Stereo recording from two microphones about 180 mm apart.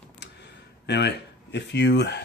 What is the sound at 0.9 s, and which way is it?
Speech, 70° left (ahead or behind).